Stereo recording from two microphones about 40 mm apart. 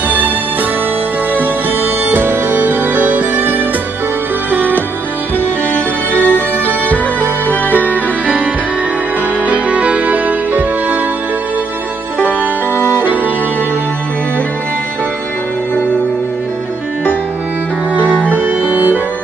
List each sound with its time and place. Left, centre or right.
1.3 s music: right
4.5 s music: right
5.7 s music: left
9.5 s music: right
12.9 s music: right
17.9 s music: left